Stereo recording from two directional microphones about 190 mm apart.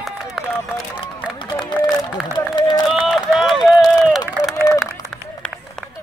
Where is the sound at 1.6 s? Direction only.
20° left (ahead or behind).